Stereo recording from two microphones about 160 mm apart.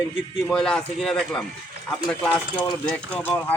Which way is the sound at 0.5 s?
5° left (ahead or behind).